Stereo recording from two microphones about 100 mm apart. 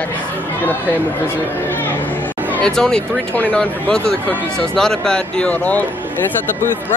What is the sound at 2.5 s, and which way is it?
Speech, 5° left (ahead or behind).